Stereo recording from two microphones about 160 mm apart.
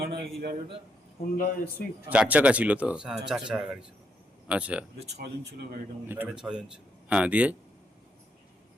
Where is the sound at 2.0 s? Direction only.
10° right (ahead or behind).